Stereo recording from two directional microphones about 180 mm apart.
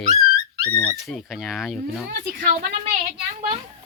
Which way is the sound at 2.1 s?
55° right (ahead or behind).